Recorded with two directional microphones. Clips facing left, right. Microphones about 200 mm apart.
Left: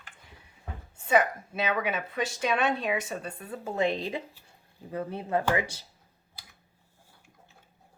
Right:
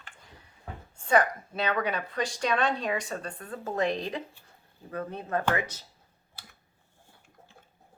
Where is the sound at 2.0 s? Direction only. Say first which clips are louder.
Even; 25° left (ahead or behind).